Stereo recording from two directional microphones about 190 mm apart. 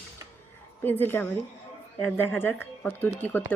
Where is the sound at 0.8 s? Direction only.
10° left (ahead or behind).